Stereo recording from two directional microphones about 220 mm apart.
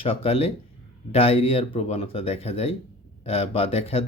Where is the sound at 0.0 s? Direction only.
25° left (ahead or behind).